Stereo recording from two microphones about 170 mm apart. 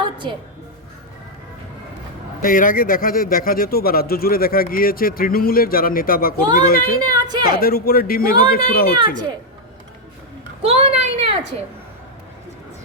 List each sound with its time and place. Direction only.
0.0 s music: 25° right (ahead or behind)
2.4 s a man's voice: 55° left (ahead or behind)
7.1 s a woman's voice: 25° right (ahead or behind)
7.5 s a man's voice: 65° left (ahead or behind)
10.6 s a sound: 40° right (ahead or behind)